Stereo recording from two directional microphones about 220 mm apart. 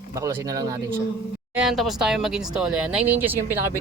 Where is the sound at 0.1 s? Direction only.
15° right (ahead or behind).